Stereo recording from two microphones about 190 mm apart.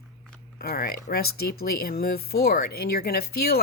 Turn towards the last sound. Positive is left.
turn(degrees=55)  # may be behind; listen again after turning